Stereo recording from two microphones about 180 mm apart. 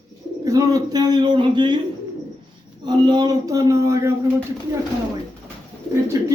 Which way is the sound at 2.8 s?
25° right (ahead or behind).